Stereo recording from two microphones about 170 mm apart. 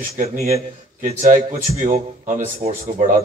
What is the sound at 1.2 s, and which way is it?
A man's voice, 50° right (ahead or behind).